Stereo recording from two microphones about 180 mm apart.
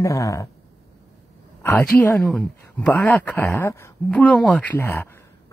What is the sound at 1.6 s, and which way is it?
Speech, 10° left (ahead or behind).